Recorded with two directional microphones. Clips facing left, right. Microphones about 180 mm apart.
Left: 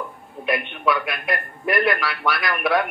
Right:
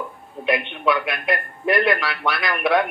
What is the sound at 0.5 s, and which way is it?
A man's voice, 25° right (ahead or behind).